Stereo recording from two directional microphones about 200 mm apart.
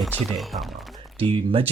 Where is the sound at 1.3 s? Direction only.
25° right (ahead or behind).